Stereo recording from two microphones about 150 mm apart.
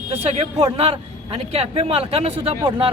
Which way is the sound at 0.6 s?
40° right (ahead or behind).